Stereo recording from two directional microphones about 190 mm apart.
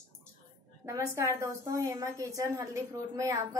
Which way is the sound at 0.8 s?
15° right (ahead or behind).